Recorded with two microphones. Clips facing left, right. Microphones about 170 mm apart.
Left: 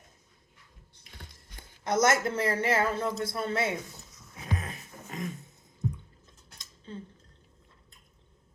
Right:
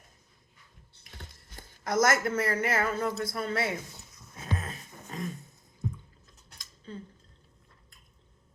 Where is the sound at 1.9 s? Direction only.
25° left (ahead or behind).